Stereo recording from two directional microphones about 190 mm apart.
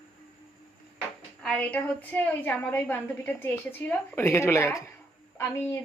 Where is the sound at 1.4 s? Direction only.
5° left (ahead or behind).